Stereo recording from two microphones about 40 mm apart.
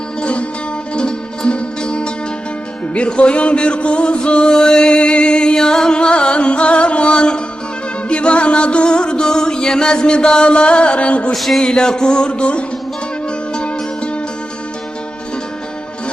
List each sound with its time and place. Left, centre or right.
0.2 s music: left
11.3 s music: centre
11.6 s music: centre